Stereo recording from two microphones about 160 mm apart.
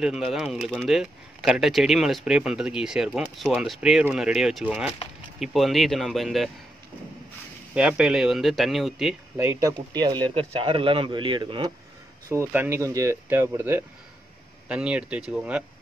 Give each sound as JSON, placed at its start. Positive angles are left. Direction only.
{"t": 0.0, "sound": "speech", "side_deg": -5}
{"t": 7.7, "sound": "speech", "side_deg": -5}
{"t": 9.4, "sound": "speech", "side_deg": -20}
{"t": 12.3, "sound": "speech", "side_deg": -15}